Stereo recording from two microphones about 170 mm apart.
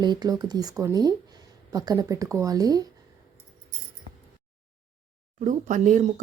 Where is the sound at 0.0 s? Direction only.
25° right (ahead or behind).